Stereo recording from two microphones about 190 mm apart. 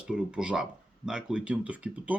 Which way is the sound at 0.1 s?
5° right (ahead or behind).